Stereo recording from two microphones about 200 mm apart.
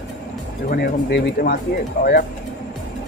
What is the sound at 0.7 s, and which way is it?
Speech, 50° left (ahead or behind).